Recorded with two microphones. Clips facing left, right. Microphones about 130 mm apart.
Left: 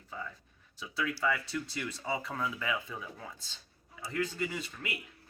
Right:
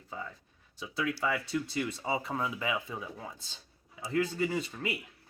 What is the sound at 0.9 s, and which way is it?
Speech, 20° right (ahead or behind).